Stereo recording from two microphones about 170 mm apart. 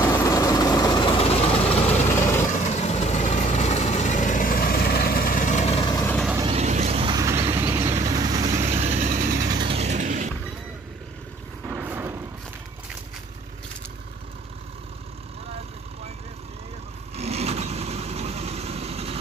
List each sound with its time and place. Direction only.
0.0 s vehicle: 20° left (ahead or behind)
1.1 s vehicle: 35° left (ahead or behind)
6.4 s vehicle: 40° right (ahead or behind)
7.2 s a sound: 20° right (ahead or behind)
7.5 s vehicle: 15° right (ahead or behind)
8.5 s vehicle: 40° right (ahead or behind); by 9.6 s 60° right (ahead or behind)
9.6 s vehicle: 35° right (ahead or behind)
11.6 s vehicle: 10° right (ahead or behind)
17.1 s vehicle: 40° right (ahead or behind)